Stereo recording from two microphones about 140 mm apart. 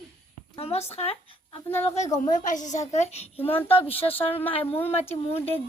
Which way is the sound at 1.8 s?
50° left (ahead or behind).